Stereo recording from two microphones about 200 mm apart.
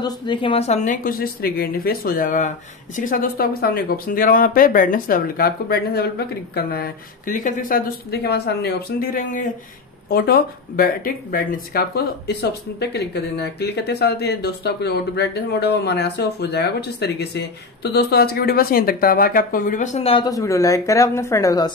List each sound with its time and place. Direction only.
0.0 s a woman's voice: 25° left (ahead or behind)
20.2 s speech: 15° left (ahead or behind)